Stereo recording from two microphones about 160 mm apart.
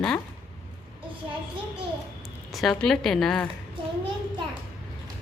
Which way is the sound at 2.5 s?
Centre (ahead or behind).